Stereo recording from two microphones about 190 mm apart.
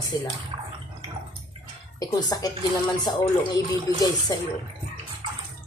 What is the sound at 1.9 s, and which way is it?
Speech, 20° left (ahead or behind).